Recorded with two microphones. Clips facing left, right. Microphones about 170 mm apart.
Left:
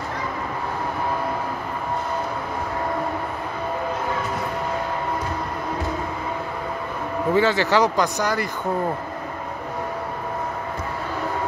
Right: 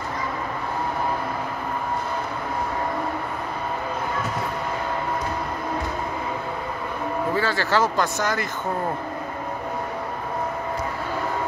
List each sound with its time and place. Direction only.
7.3 s speech: 20° left (ahead or behind)